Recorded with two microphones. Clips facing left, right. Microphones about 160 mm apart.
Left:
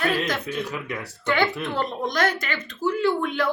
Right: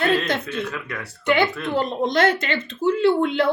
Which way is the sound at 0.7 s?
15° left (ahead or behind).